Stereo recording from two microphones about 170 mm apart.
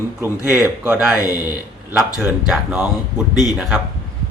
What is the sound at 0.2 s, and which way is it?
Speech, 15° right (ahead or behind).